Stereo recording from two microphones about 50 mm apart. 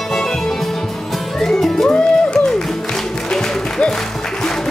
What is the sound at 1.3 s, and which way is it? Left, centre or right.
Music, centre.